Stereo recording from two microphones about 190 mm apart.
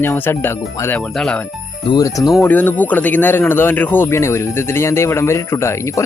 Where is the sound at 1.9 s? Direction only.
20° left (ahead or behind).